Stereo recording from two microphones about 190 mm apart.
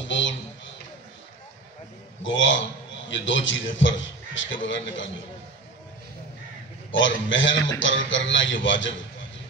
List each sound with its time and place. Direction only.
0.1 s a sound: 75° left (ahead or behind)
2.2 s a man's voice: 80° left
6.9 s a man's voice: 80° left